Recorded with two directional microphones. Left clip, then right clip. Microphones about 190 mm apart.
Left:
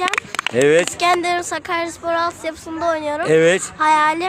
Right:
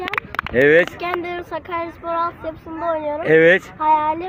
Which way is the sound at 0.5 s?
10° left (ahead or behind).